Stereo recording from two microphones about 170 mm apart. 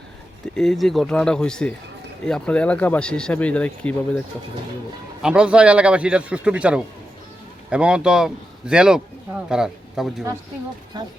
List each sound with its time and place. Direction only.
0.4 s speech: centre (ahead or behind)
5.2 s a man's voice: 5° right (ahead or behind)
10.9 s speech: 25° right (ahead or behind)